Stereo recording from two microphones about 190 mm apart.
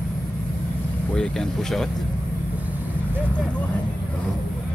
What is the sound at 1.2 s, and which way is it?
Speech, centre (ahead or behind).